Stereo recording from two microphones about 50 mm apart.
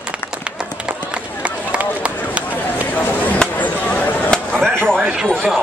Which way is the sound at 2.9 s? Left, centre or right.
Left.